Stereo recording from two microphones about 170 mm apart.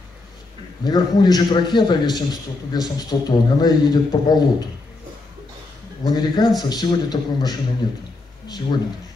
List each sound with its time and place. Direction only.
0.8 s a man's voice: 25° left (ahead or behind)
6.0 s a man's voice: 25° left (ahead or behind)